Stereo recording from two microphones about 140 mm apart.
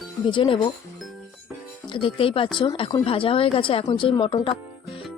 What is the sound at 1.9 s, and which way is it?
Speech, 40° left (ahead or behind).